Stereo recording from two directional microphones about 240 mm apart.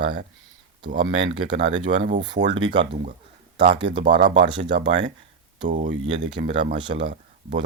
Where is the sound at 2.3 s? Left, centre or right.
Right.